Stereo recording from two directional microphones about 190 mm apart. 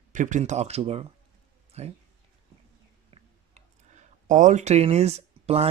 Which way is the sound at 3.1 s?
35° right (ahead or behind).